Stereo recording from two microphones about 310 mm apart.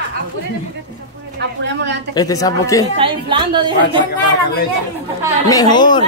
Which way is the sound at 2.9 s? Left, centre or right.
Centre.